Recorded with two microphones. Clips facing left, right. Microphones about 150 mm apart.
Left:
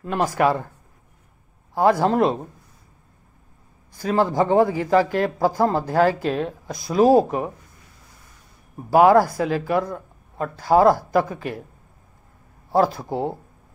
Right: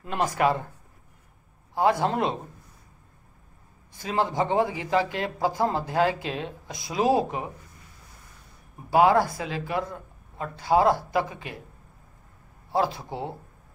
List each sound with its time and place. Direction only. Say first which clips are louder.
0.0 s speech: left 4 dB; 45° left (ahead or behind)
1.8 s speech: left 5 dB; 45° left (ahead or behind)
4.0 s speech: left 6 dB; 45° left (ahead or behind)
8.9 s speech: left 5 dB; 45° left (ahead or behind)
12.7 s speech: left 6 dB; 45° left (ahead or behind)